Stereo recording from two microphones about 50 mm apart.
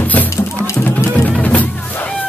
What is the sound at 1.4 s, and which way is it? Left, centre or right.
Music, left.